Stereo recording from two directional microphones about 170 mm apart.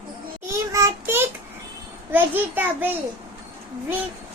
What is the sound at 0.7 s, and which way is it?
Child singing, 15° right (ahead or behind).